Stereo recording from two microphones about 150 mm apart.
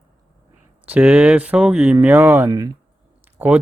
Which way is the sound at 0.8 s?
10° right (ahead or behind).